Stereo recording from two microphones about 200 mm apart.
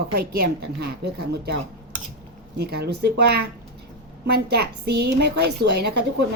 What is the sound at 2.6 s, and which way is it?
A woman's voice, 55° right (ahead or behind).